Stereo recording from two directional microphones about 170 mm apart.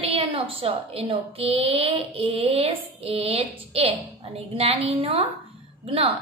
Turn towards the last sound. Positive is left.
turn(degrees=-35)  # may be behind; listen again after turning